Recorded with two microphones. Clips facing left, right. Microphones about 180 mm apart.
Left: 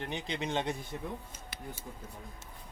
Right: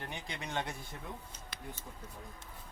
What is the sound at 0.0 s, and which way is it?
Speech, 20° left (ahead or behind).